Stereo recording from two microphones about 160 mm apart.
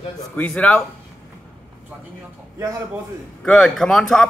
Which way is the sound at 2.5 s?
15° right (ahead or behind).